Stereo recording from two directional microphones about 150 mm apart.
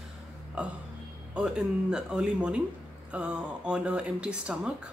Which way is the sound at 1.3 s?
5° right (ahead or behind).